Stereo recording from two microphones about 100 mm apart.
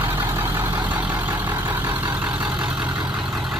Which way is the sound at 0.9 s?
20° right (ahead or behind).